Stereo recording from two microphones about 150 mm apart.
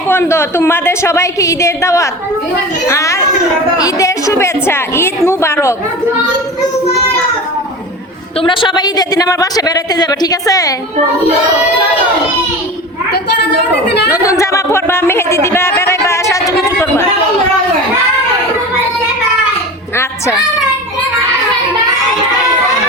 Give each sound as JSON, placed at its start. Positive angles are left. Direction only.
{"t": 0.1, "sound": "a woman's voice", "side_deg": 15}
{"t": 8.4, "sound": "speech", "side_deg": 30}
{"t": 13.1, "sound": "a woman's voice", "side_deg": 90}
{"t": 14.1, "sound": "a sound", "side_deg": 20}